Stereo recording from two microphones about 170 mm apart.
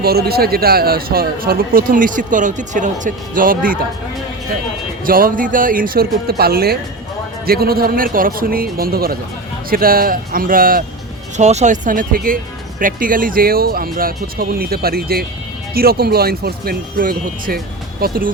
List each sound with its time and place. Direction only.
0.0 s speech: 65° right (ahead or behind)
5.0 s speech: 55° right (ahead or behind)
11.3 s speech: 40° right (ahead or behind); by 18.3 s 60° right (ahead or behind)